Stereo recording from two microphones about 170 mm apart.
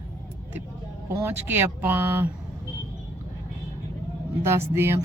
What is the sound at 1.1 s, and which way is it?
Speech, 15° right (ahead or behind).